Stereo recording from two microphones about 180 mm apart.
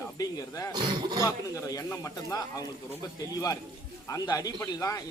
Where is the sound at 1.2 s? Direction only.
20° left (ahead or behind).